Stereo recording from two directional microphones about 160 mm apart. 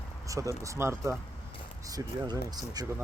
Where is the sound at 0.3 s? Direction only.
20° right (ahead or behind).